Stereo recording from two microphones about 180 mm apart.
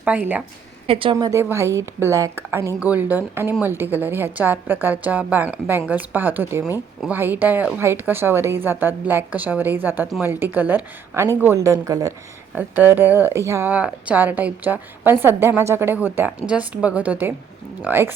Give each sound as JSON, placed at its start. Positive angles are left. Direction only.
{"t": 0.0, "sound": "a woman's voice", "side_deg": -10}
{"t": 0.9, "sound": "a woman's voice", "side_deg": -30}
{"t": 1.1, "sound": "a woman's voice", "side_deg": -15}